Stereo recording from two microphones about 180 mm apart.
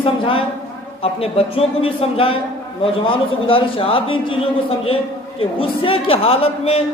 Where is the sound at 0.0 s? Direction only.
30° left (ahead or behind).